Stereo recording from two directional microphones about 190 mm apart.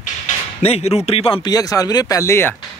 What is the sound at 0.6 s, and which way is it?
Speech, 35° left (ahead or behind).